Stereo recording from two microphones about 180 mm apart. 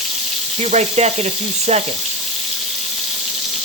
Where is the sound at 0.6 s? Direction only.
40° right (ahead or behind).